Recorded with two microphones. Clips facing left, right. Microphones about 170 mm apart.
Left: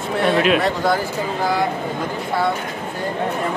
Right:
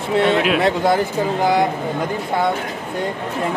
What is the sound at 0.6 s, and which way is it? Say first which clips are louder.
Speech: right 2 dB; 25° right (ahead or behind).